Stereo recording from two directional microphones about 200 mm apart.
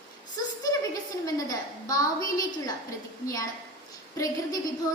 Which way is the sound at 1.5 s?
15° left (ahead or behind).